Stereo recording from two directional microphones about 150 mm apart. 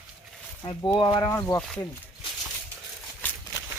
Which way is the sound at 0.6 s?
35° left (ahead or behind).